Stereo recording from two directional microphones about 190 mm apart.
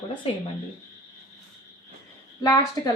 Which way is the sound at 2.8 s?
15° left (ahead or behind).